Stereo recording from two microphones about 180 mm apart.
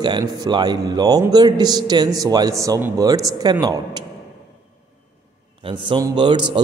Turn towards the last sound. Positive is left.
turn(degrees=-25)  # may be behind; listen again after turning